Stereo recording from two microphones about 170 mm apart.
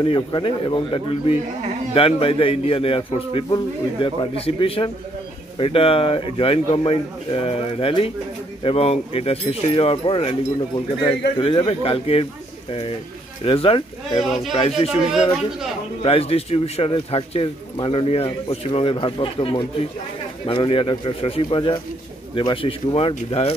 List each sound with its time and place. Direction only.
0.0 s a man's voice: 30° left (ahead or behind)
13.4 s a man's voice: 35° left (ahead or behind)
14.2 s speech: centre (ahead or behind)
14.5 s a man's voice: 35° left (ahead or behind)
16.0 s a man's voice: 35° left (ahead or behind)